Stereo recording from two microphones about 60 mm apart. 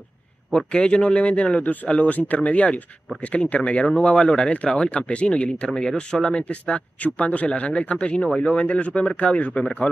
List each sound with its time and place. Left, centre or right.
0.5 s speech: centre